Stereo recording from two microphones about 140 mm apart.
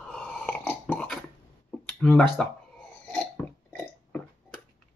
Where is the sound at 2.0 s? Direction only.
5° left (ahead or behind).